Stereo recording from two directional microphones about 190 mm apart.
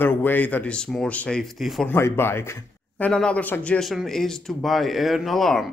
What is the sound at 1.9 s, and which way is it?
Speech, 10° left (ahead or behind).